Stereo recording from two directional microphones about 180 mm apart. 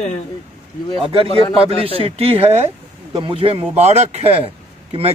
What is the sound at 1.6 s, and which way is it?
Speech, 30° right (ahead or behind).